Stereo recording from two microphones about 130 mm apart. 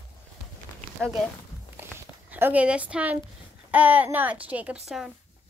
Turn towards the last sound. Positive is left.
turn(degrees=0)  # may be behind; listen again after turning